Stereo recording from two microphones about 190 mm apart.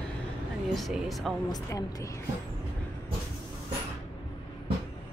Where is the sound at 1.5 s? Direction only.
20° left (ahead or behind).